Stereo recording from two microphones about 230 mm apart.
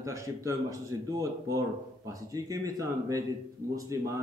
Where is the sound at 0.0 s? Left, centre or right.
Centre.